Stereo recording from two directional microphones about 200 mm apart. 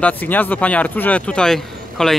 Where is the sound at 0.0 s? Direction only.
10° left (ahead or behind).